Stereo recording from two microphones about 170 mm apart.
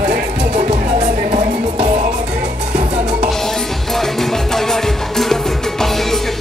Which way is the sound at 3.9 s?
Centre (ahead or behind).